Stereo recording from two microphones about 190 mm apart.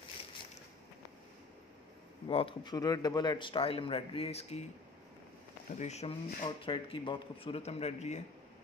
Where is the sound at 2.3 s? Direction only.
30° left (ahead or behind).